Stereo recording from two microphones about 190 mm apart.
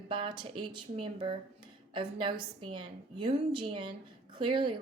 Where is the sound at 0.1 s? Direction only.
25° right (ahead or behind).